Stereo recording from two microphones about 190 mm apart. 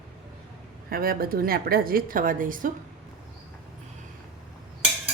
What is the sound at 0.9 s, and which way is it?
A woman's voice, 50° right (ahead or behind).